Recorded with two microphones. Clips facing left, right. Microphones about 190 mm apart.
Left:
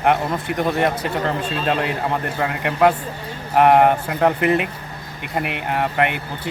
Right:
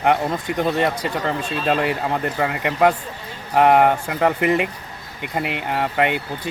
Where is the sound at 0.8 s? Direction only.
25° left (ahead or behind).